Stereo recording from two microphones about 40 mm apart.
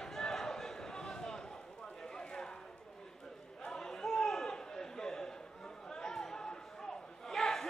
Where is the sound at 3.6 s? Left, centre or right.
Centre.